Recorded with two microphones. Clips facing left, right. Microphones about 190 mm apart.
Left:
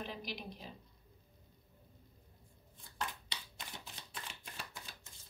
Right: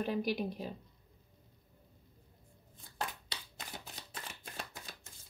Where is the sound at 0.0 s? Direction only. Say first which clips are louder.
Right 11 dB; 50° right (ahead or behind).